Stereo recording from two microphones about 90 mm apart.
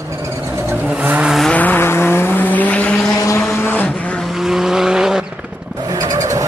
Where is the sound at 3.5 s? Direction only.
25° left (ahead or behind).